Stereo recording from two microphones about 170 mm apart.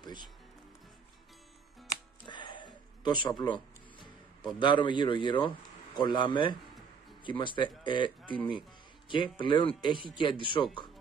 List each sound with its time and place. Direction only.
0.0 s music: 25° left (ahead or behind)
2.2 s a sound: 30° left (ahead or behind)
4.6 s speech: 30° left (ahead or behind)
9.1 s speech: 30° left (ahead or behind)